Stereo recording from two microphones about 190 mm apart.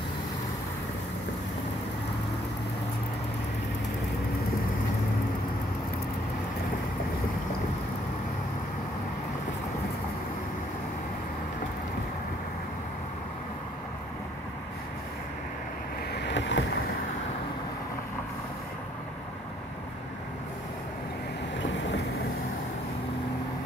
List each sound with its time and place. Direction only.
16.1 s boat: 70° left (ahead or behind)
21.5 s boat: 75° left (ahead or behind)